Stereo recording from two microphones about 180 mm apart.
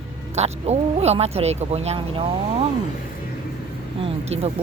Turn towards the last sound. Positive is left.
turn(degrees=-35)  # may be behind; listen again after turning